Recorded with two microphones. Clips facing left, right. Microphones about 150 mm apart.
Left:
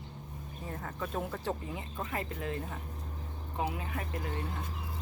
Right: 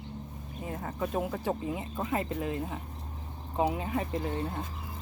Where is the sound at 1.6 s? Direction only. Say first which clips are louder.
Right 6 dB; 20° right (ahead or behind).